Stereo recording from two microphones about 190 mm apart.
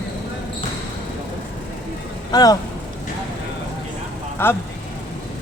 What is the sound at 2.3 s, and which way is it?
Speech, 20° left (ahead or behind).